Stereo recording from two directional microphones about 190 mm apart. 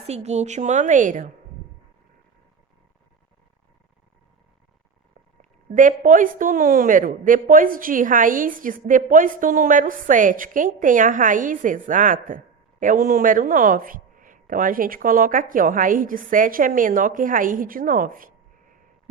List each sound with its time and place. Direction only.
0.1 s a woman's voice: 35° right (ahead or behind)
5.4 s speech: 45° right (ahead or behind)